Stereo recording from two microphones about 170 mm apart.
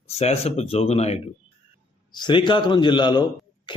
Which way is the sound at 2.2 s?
25° left (ahead or behind).